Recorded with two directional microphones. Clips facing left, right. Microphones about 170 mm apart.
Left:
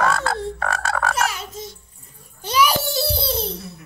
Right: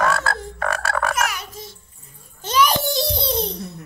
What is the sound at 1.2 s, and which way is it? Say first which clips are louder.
Speech: left 1 dB; 25° left (ahead or behind).